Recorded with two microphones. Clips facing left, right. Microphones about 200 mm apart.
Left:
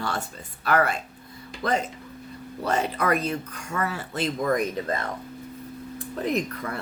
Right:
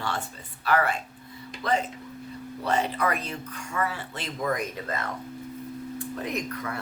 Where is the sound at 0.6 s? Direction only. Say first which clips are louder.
Left 2 dB; 45° left (ahead or behind).